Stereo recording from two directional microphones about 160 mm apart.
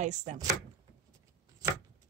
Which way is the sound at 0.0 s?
45° right (ahead or behind).